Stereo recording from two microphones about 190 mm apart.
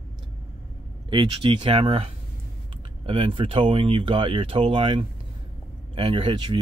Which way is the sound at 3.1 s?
30° right (ahead or behind).